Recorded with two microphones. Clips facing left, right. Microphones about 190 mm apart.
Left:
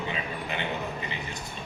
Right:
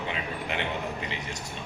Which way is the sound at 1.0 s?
75° right (ahead or behind).